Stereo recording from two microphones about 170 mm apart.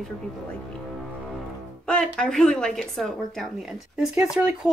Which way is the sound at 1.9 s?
5° left (ahead or behind).